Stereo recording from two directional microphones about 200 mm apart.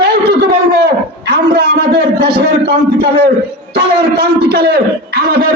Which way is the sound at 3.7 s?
50° right (ahead or behind).